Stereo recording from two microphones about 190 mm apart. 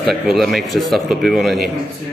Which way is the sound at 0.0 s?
Centre (ahead or behind).